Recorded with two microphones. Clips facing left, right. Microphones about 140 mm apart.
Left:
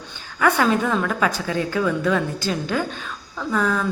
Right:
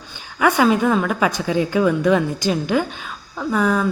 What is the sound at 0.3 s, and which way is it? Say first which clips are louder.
A woman's voice: right 3 dB; 10° right (ahead or behind).